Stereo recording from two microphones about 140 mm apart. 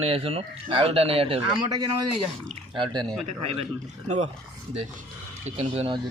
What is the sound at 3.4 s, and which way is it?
Speech, 45° right (ahead or behind).